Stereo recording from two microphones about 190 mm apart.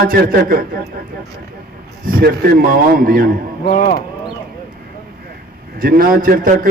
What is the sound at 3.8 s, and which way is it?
Speech, 45° left (ahead or behind).